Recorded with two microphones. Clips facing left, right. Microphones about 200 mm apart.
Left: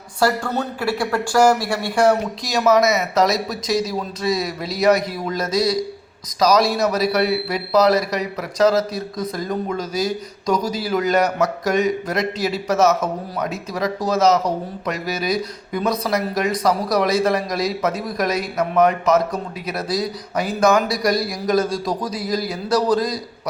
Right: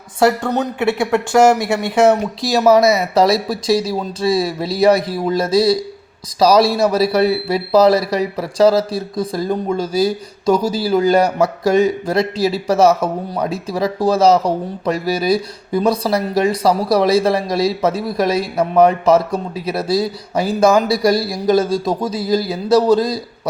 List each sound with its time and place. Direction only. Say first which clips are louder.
0.2 s a man's voice: right 5 dB; 20° right (ahead or behind)